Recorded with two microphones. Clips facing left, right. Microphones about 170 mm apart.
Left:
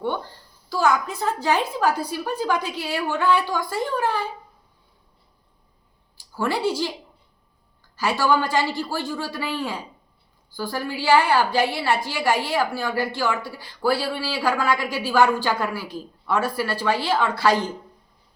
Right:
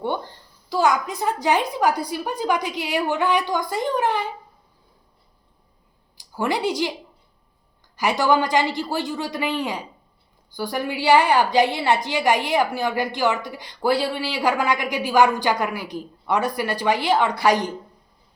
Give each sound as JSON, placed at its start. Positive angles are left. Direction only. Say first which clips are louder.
{"t": 0.7, "sound": "a woman's voice", "louder": "right 1 dB", "side_deg": -15}
{"t": 6.1, "sound": "speech", "louder": "right 1 dB", "side_deg": -15}
{"t": 7.9, "sound": "a woman's voice", "louder": "right 2 dB", "side_deg": -15}